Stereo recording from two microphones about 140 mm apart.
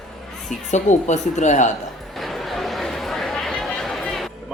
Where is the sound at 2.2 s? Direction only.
Centre (ahead or behind).